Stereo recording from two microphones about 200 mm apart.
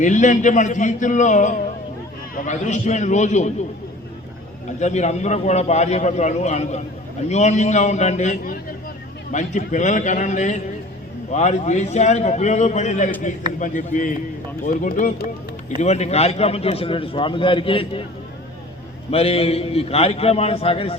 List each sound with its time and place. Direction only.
0.0 s a man's voice: 40° left (ahead or behind)
4.8 s a man's voice: 35° left (ahead or behind)
15.8 s a man's voice: 35° left (ahead or behind)
19.1 s a man's voice: 30° left (ahead or behind)